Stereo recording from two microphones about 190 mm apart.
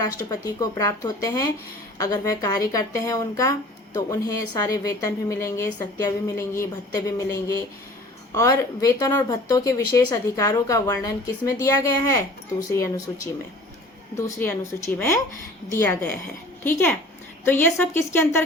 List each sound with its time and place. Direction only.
0.0 s speech: 20° left (ahead or behind)
14.2 s speech: 15° left (ahead or behind)